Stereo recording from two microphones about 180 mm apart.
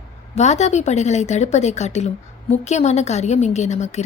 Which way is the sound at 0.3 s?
40° left (ahead or behind).